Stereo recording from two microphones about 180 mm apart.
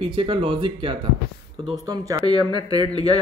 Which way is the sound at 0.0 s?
30° right (ahead or behind).